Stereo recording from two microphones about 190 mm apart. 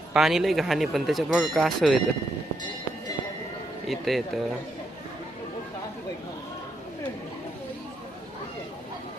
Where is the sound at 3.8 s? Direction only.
Centre (ahead or behind).